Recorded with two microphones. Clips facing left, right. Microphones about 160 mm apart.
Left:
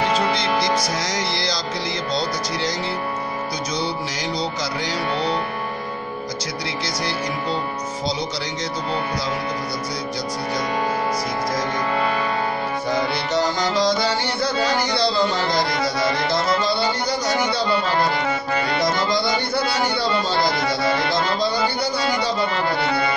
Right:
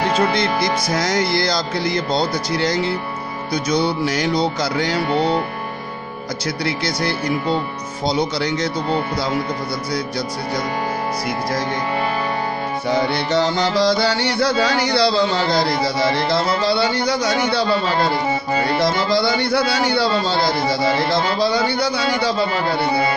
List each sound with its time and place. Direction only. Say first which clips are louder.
0.4 s music: right 1 dB; 55° right (ahead or behind)
6.6 s music: right 6 dB; 60° right (ahead or behind)
13.0 s music: right 3 dB; 70° right (ahead or behind)
18.9 s music: right 3 dB; 65° right (ahead or behind)